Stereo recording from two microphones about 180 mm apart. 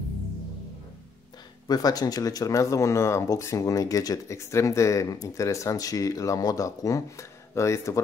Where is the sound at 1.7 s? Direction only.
20° left (ahead or behind).